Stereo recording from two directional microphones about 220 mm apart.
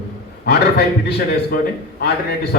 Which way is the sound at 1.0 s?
45° left (ahead or behind).